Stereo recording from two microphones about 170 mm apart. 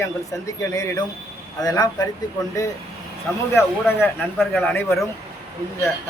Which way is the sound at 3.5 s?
10° left (ahead or behind).